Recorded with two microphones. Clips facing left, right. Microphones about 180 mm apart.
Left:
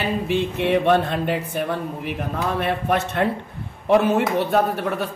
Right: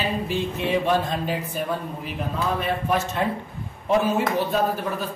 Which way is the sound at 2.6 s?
65° left (ahead or behind).